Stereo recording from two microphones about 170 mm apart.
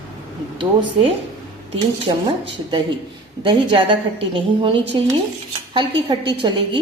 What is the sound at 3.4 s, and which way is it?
A woman's voice, 30° right (ahead or behind).